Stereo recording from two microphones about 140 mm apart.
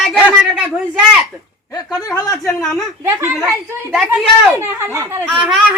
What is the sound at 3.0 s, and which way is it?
Speech, 20° right (ahead or behind).